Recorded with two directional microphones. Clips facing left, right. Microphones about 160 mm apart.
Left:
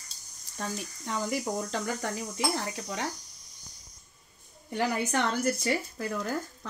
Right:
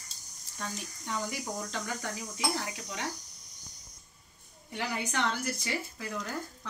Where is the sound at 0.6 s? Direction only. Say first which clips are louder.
Left 4 dB; 40° left (ahead or behind).